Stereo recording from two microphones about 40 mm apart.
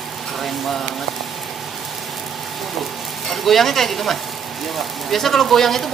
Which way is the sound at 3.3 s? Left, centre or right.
Centre.